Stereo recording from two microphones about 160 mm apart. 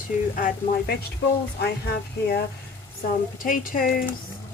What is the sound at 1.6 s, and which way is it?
Speech, 85° left.